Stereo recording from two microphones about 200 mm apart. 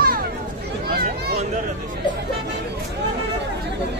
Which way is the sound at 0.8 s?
50° right (ahead or behind).